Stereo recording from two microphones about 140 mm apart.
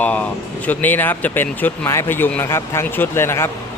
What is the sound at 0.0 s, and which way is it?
Speech, 10° left (ahead or behind).